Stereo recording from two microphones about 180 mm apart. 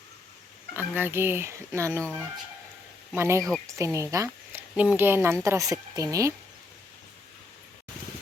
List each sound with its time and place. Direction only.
0.8 s speech: 10° right (ahead or behind)
3.2 s speech: 15° right (ahead or behind)